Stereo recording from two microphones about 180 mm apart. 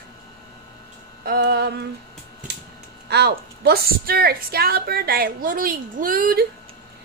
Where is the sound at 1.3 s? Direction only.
60° right (ahead or behind).